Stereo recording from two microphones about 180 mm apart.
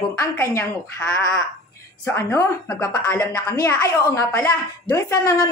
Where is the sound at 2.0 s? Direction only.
15° left (ahead or behind).